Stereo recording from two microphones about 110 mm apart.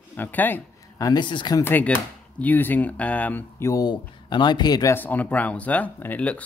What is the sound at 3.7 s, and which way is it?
Speech, 40° left (ahead or behind).